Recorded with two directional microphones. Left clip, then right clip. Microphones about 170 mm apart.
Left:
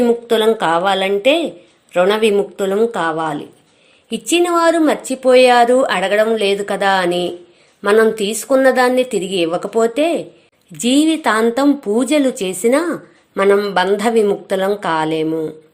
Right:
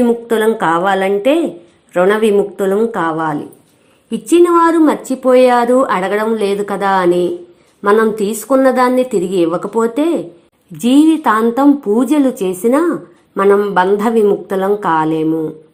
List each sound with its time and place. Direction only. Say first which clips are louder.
0.0 s a woman's voice: right 1 dB; 30° left (ahead or behind)
4.3 s a woman's voice: right 4 dB; 25° left (ahead or behind)